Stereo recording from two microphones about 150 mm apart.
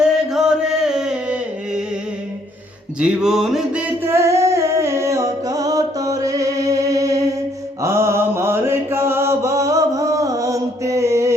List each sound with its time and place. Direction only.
0.0 s chant: 5° right (ahead or behind)
3.0 s a sound: 5° right (ahead or behind); by 7.3 s 20° right (ahead or behind)
7.8 s mantra: 15° right (ahead or behind)